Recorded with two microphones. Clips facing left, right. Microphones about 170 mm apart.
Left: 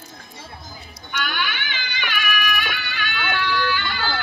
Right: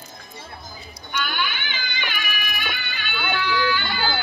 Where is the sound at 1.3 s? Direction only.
75° left (ahead or behind).